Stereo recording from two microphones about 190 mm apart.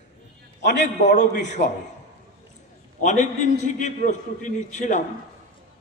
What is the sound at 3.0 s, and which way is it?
A man's voice, 40° left (ahead or behind).